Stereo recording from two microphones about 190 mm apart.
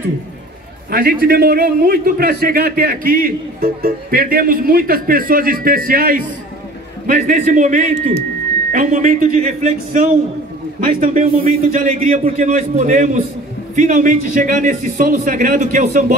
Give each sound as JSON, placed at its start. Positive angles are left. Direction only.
{"t": 0.8, "sound": "a man's voice", "side_deg": -55}